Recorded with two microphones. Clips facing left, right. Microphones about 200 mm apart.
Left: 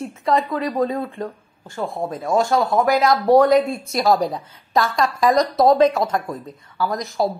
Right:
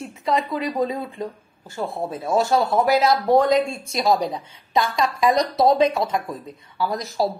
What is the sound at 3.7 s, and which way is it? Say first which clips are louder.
Speech: left 2 dB; 50° left (ahead or behind).